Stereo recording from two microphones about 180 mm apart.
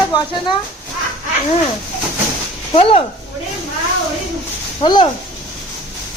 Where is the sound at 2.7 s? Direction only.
35° left (ahead or behind).